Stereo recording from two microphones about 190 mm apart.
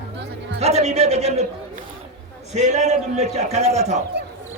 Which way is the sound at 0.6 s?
35° right (ahead or behind).